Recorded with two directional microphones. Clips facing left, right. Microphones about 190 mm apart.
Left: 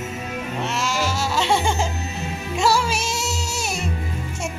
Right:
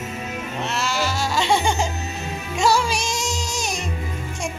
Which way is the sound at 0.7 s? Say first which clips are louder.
Right 1 dB; 10° left (ahead or behind).